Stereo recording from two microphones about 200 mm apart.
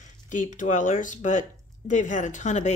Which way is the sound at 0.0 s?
40° left (ahead or behind).